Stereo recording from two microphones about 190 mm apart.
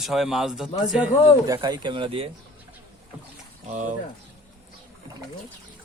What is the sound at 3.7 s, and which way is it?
Speech, 40° right (ahead or behind).